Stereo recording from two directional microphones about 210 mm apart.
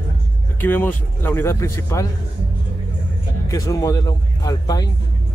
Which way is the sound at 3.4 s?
15° left (ahead or behind).